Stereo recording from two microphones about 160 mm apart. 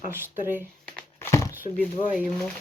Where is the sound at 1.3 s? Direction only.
20° left (ahead or behind).